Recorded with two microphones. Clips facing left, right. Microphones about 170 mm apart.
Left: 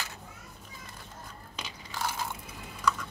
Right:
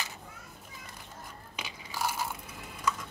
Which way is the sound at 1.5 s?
5° right (ahead or behind).